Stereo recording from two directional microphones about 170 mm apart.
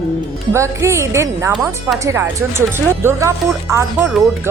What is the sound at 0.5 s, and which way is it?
Speech, 15° right (ahead or behind).